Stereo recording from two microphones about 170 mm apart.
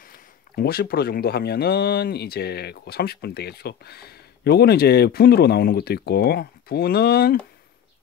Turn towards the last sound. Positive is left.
turn(degrees=65)  # may be behind; listen again after turning